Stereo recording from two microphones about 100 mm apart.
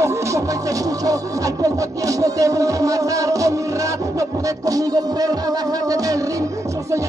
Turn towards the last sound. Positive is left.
turn(degrees=-40)  # may be behind; listen again after turning